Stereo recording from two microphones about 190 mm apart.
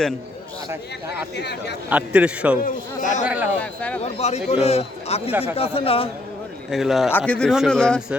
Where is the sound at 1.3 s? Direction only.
60° left (ahead or behind).